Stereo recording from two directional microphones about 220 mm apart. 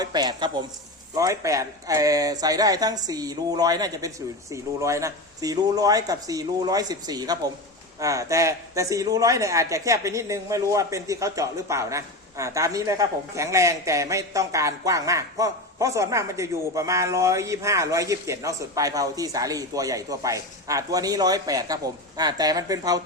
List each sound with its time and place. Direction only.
0.0 s a woman's voice: 20° right (ahead or behind)